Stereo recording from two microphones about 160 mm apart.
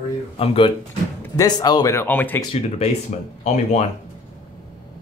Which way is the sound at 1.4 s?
25° left (ahead or behind).